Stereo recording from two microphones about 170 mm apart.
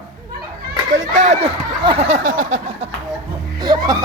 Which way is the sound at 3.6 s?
25° right (ahead or behind).